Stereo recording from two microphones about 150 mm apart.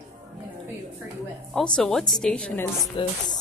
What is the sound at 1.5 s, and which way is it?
Speech, 5° left (ahead or behind).